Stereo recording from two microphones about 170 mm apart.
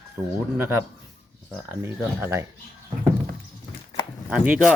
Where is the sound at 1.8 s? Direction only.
15° right (ahead or behind).